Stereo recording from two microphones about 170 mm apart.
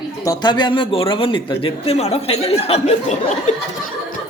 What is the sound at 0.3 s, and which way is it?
Speech, 25° left (ahead or behind).